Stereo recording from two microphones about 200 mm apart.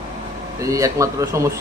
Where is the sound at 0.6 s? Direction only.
15° right (ahead or behind).